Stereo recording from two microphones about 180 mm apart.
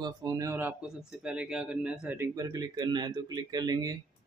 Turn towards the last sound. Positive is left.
turn(degrees=-20)  # may be behind; listen again after turning